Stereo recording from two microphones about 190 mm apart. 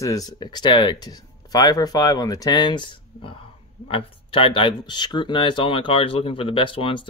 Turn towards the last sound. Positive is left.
turn(degrees=25)  # may be behind; listen again after turning